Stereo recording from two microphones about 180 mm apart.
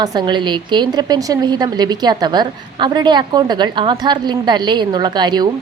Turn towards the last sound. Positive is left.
turn(degrees=-25)  # may be behind; listen again after turning